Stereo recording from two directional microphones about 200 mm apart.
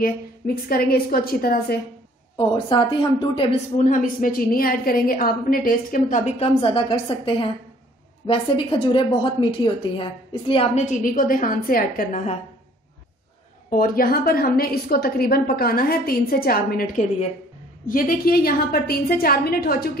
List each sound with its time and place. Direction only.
0.7 s a woman's voice: 50° left (ahead or behind)
2.3 s a woman's voice: 20° left (ahead or behind)
3.7 s a woman's voice: 40° left (ahead or behind)
13.7 s a woman's voice: 45° left (ahead or behind)